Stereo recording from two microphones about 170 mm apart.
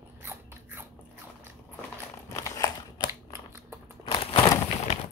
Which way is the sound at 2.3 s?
20° left (ahead or behind).